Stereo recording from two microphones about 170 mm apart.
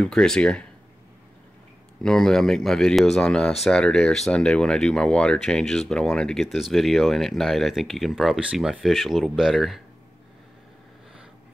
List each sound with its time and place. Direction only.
0.0 s speech: 5° left (ahead or behind)
2.0 s speech: 5° left (ahead or behind)